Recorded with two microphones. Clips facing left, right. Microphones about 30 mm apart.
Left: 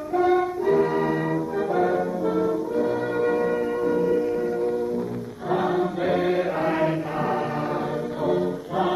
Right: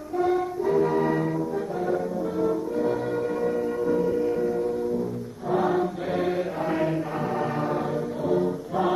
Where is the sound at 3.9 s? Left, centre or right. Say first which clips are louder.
Even; centre.